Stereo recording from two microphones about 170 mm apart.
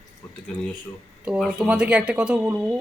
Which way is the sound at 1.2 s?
5° right (ahead or behind).